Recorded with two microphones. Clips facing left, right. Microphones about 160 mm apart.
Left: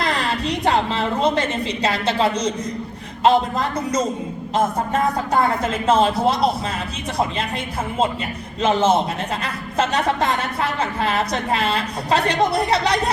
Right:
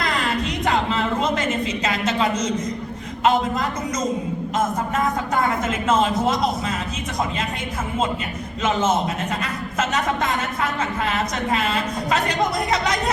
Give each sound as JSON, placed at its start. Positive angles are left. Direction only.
{"t": 0.0, "sound": "a woman's voice", "side_deg": 35}
{"t": 9.4, "sound": "a woman's voice", "side_deg": 30}